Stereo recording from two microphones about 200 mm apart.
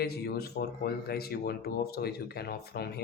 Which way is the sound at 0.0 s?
50° left (ahead or behind).